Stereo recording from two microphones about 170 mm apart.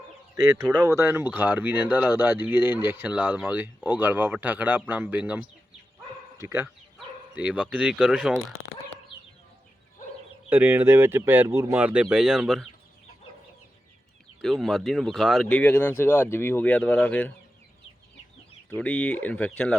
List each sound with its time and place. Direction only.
0.5 s speech: 20° right (ahead or behind); by 8.3 s 5° right (ahead or behind)
10.5 s speech: 10° right (ahead or behind)
14.4 s speech: centre (ahead or behind)
18.7 s speech: 5° left (ahead or behind)